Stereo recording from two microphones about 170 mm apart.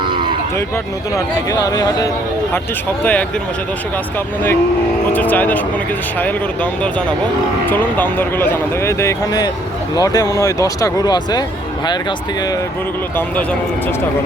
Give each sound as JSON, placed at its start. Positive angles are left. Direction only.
{"t": 0.0, "sound": "a sound", "side_deg": -30}
{"t": 1.1, "sound": "speech", "side_deg": 20}
{"t": 3.0, "sound": "speech", "side_deg": 10}
{"t": 5.1, "sound": "speech", "side_deg": 10}
{"t": 7.7, "sound": "speech", "side_deg": 10}